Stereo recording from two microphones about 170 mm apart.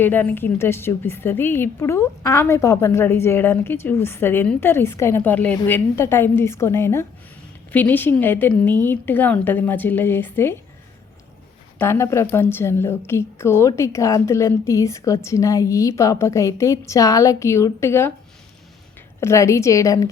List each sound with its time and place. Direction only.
0.0 s a woman's voice: 10° left (ahead or behind)
11.8 s a woman's voice: 15° left (ahead or behind)
19.2 s a woman's voice: 15° left (ahead or behind)